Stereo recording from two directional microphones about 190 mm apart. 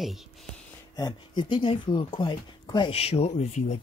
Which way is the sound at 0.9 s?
20° left (ahead or behind).